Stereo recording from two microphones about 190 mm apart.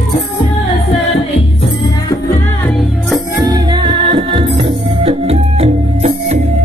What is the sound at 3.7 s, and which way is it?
Music, 25° right (ahead or behind).